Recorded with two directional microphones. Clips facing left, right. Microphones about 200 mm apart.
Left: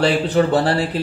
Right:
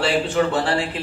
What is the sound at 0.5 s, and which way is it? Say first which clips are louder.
Speech: left 4 dB; 35° left (ahead or behind).